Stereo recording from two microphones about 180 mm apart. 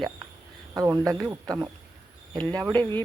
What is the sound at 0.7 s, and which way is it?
A man's voice, 20° right (ahead or behind).